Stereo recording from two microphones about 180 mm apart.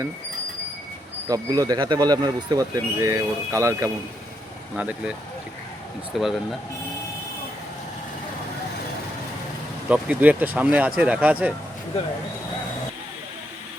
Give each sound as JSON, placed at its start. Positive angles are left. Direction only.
{"t": 1.3, "sound": "speech", "side_deg": -20}
{"t": 6.1, "sound": "speech", "side_deg": 0}
{"t": 9.9, "sound": "speech", "side_deg": -10}